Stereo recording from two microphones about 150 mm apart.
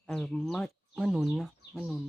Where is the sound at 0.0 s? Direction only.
5° left (ahead or behind).